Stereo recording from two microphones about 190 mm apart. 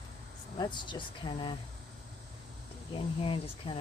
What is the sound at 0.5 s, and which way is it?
Speech, 25° left (ahead or behind).